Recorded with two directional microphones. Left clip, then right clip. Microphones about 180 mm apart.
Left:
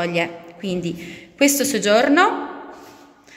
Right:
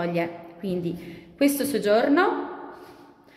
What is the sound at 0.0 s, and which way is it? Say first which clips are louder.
A woman's voice: left 5 dB; 5° left (ahead or behind).